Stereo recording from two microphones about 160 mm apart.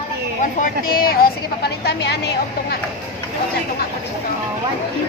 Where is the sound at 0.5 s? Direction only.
65° left (ahead or behind); by 2.8 s 90° left.